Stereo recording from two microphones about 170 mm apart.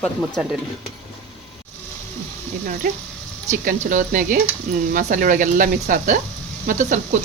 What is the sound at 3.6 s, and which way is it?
Speech, 50° right (ahead or behind).